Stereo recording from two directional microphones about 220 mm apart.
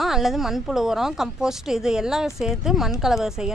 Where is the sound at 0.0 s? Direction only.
Centre (ahead or behind).